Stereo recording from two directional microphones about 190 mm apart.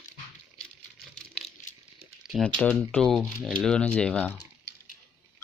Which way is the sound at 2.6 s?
10° left (ahead or behind).